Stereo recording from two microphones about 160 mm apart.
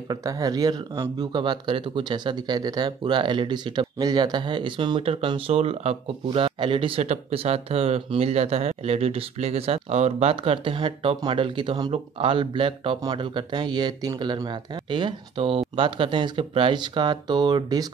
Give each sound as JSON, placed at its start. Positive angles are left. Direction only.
{"t": 0.1, "sound": "speech", "side_deg": -20}